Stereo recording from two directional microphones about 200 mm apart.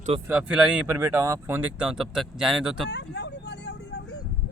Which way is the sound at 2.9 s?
60° left (ahead or behind).